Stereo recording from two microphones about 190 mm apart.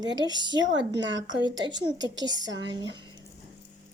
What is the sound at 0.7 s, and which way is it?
Speech, 70° right (ahead or behind).